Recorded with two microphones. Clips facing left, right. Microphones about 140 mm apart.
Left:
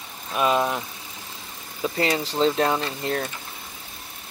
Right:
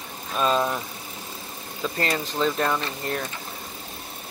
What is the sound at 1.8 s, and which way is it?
Speech, 15° left (ahead or behind).